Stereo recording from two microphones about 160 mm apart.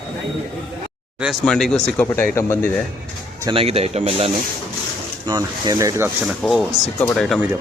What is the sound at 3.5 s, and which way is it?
Speech, 40° right (ahead or behind).